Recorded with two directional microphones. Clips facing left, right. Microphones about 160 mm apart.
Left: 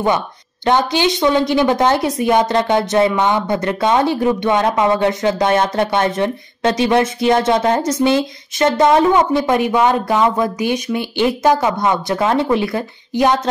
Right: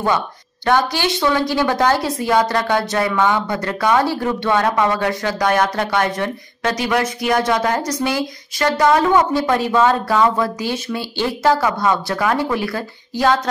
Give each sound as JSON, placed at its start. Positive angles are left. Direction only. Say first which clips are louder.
{"t": 0.7, "sound": "a woman's voice", "louder": "left 2 dB", "side_deg": 20}